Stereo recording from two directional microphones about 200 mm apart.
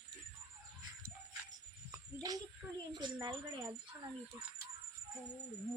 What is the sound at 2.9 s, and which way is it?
Speech, 20° right (ahead or behind).